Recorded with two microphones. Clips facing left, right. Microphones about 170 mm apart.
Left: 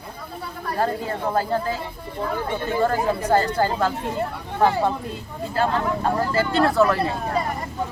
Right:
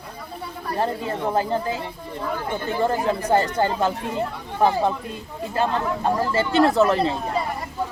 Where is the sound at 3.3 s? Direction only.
20° right (ahead or behind).